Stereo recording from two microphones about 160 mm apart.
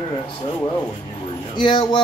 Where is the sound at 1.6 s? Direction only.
30° left (ahead or behind).